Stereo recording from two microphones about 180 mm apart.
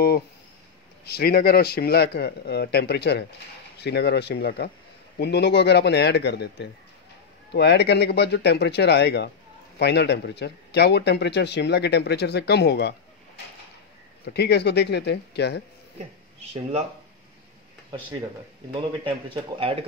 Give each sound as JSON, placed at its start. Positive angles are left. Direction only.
{"t": 1.0, "sound": "a man's voice", "side_deg": 60}
{"t": 14.2, "sound": "speech", "side_deg": 65}
{"t": 18.7, "sound": "speech", "side_deg": -30}